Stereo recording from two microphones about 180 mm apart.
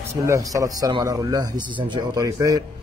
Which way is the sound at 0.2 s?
20° right (ahead or behind).